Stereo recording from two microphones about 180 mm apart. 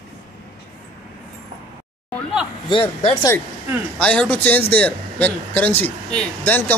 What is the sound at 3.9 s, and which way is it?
Speech, 5° left (ahead or behind).